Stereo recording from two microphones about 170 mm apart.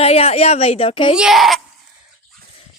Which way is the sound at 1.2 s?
Centre (ahead or behind).